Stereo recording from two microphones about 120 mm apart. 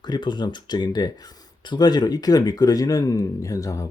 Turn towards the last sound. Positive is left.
turn(degrees=30)  # may be behind; listen again after turning